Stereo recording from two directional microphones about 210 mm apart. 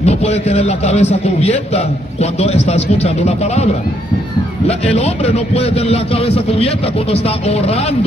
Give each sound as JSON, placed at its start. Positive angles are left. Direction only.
{"t": 0.0, "sound": "a man's voice", "side_deg": 30}
{"t": 4.6, "sound": "speech", "side_deg": 30}